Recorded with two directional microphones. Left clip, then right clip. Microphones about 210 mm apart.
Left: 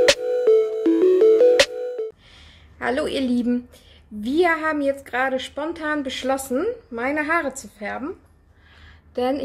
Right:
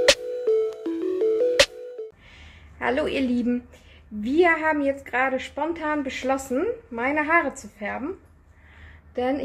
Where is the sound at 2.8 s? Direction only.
15° left (ahead or behind).